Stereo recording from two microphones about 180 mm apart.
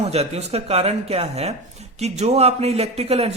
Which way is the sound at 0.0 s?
35° right (ahead or behind).